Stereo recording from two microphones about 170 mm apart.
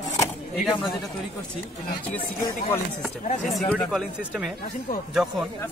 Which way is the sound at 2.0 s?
10° left (ahead or behind).